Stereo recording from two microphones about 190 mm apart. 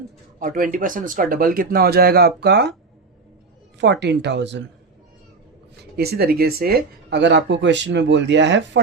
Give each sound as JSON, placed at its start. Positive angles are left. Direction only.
{"t": 0.3, "sound": "speech", "side_deg": -45}
{"t": 3.8, "sound": "speech", "side_deg": -65}
{"t": 6.0, "sound": "speech", "side_deg": -55}